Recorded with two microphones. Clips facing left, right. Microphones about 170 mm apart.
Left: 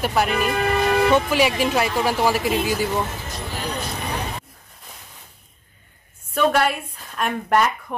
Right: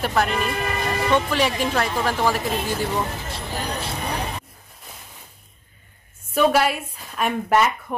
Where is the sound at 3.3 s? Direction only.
30° right (ahead or behind).